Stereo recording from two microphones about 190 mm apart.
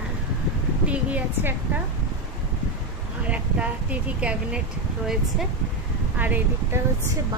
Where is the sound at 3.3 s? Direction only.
5° right (ahead or behind).